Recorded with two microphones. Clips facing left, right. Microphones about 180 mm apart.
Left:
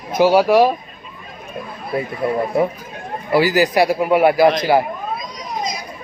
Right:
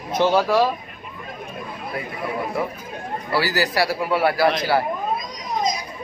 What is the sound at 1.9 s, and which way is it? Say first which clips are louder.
Speech: left 9 dB; 25° left (ahead or behind).